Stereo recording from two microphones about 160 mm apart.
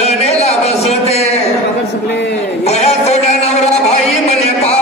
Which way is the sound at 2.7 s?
40° left (ahead or behind).